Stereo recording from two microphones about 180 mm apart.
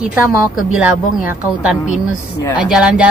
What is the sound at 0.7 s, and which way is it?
A woman's voice, 5° right (ahead or behind).